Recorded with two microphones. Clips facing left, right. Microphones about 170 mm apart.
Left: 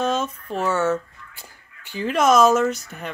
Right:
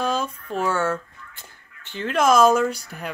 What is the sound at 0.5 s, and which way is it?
Speech, 5° left (ahead or behind).